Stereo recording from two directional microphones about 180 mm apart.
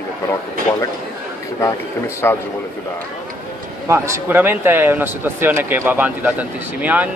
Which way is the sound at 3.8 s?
15° right (ahead or behind).